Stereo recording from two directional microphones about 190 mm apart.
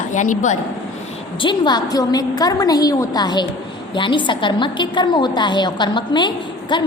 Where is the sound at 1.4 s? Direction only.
25° left (ahead or behind).